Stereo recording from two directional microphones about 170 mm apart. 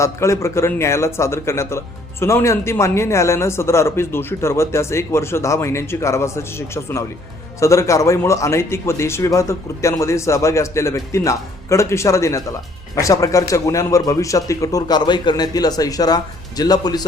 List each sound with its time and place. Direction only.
0.0 s a man's voice: 15° left (ahead or behind)